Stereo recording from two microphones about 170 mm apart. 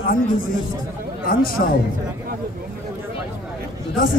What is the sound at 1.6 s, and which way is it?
Speech, 60° left (ahead or behind).